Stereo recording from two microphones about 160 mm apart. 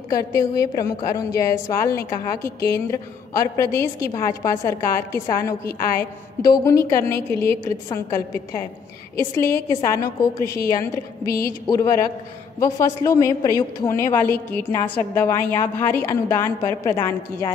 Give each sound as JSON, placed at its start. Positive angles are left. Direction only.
{"t": 0.1, "sound": "a woman's voice", "side_deg": 20}
{"t": 11.6, "sound": "a woman's voice", "side_deg": 20}